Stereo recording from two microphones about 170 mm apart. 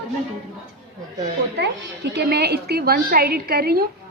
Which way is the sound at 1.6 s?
85° right.